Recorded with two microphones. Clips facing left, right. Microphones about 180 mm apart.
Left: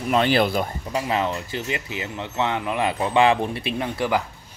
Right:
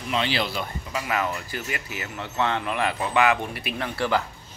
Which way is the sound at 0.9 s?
30° left (ahead or behind).